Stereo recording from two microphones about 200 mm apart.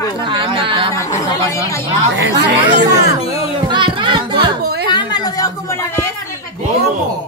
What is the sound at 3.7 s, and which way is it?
Speech, 25° right (ahead or behind).